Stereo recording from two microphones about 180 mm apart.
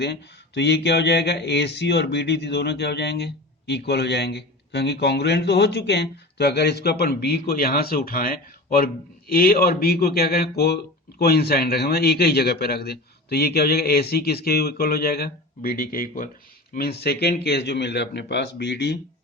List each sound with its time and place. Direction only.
0.0 s a man's voice: 70° left (ahead or behind); by 16.3 s 50° left (ahead or behind)
16.7 s speech: 60° left (ahead or behind)